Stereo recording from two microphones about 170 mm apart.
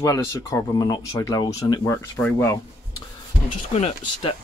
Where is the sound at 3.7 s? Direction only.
35° left (ahead or behind).